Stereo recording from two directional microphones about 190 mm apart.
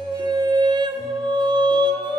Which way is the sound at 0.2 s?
20° right (ahead or behind).